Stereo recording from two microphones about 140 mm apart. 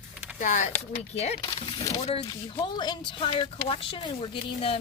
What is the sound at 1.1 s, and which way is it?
A woman's voice, 50° left (ahead or behind).